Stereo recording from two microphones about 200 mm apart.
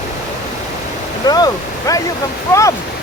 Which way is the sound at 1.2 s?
20° left (ahead or behind).